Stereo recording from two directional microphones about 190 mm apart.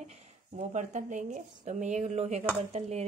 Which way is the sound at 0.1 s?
40° right (ahead or behind).